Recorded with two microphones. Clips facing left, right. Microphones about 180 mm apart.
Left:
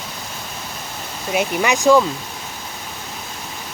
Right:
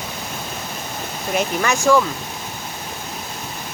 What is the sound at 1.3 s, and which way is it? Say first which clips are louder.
Speech: left 2 dB; 15° left (ahead or behind).